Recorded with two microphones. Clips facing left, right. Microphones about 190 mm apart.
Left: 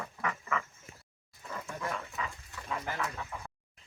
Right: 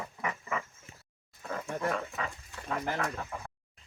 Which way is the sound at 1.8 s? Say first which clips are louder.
Right 4 dB; 55° right (ahead or behind).